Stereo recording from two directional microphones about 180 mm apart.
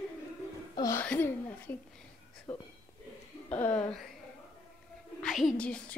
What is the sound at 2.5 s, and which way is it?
Speech, 35° left (ahead or behind).